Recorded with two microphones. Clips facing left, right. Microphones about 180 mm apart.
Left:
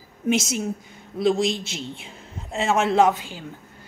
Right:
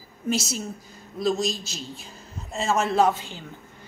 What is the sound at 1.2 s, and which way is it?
A man's voice, 25° left (ahead or behind).